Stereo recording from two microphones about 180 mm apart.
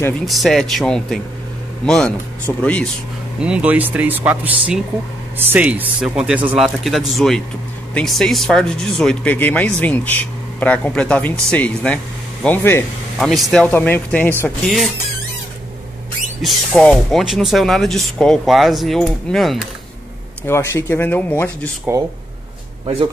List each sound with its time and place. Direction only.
0.2 s speech: centre (ahead or behind)
3.3 s speech: 5° right (ahead or behind); by 12.8 s 10° left (ahead or behind)
13.2 s speech: centre (ahead or behind)
16.3 s speech: centre (ahead or behind)
20.4 s speech: 15° left (ahead or behind)
21.9 s speech: 20° right (ahead or behind)